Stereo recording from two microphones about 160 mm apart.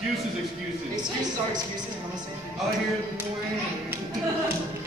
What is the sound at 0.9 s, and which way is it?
A woman's voice, 25° right (ahead or behind).